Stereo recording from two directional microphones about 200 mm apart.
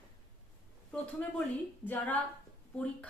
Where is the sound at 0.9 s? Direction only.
5° left (ahead or behind).